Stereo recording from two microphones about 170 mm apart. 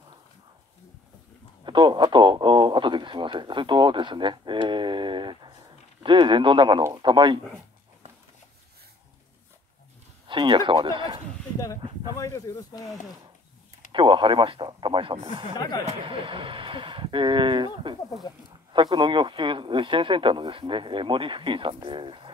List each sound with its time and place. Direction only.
1.6 s speech: 25° right (ahead or behind)
10.2 s speech: 30° right (ahead or behind)
12.2 s speech: 20° left (ahead or behind)
13.9 s speech: 30° right (ahead or behind)
15.5 s speech: 25° left (ahead or behind)
15.9 s speech: 30° right (ahead or behind)
18.3 s speech: 25° left (ahead or behind)
18.7 s speech: 30° right (ahead or behind)